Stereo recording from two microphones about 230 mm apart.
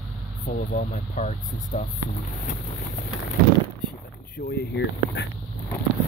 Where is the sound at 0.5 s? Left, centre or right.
Left.